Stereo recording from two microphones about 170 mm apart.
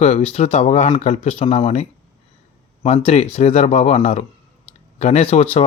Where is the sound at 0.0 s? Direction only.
40° left (ahead or behind).